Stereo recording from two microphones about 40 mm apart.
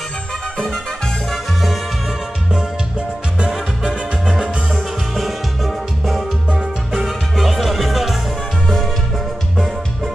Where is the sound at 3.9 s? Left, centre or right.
Right.